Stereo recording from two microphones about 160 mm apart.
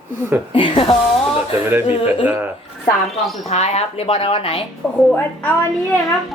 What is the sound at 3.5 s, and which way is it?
Speech, 40° left (ahead or behind).